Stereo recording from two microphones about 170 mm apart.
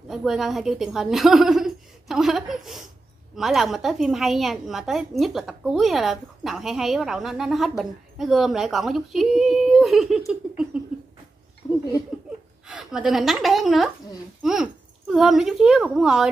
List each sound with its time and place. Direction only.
0.1 s a woman's voice: centre (ahead or behind)
11.6 s a sound: 25° left (ahead or behind)
12.6 s a woman's voice: 5° right (ahead or behind)